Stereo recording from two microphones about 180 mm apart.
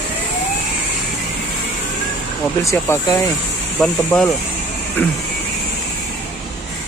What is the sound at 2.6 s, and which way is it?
Speech, 15° left (ahead or behind).